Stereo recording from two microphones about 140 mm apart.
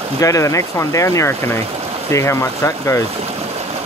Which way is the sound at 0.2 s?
25° left (ahead or behind).